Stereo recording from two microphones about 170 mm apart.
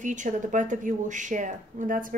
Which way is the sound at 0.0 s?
45° right (ahead or behind).